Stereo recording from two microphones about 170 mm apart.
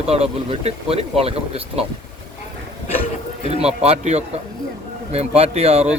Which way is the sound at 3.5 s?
40° right (ahead or behind).